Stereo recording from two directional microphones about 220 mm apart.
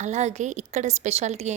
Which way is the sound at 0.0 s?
30° right (ahead or behind).